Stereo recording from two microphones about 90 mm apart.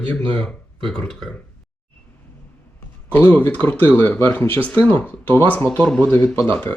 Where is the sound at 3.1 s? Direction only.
20° left (ahead or behind).